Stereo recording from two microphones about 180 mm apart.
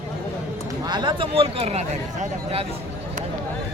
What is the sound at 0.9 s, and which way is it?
Speech, 25° right (ahead or behind).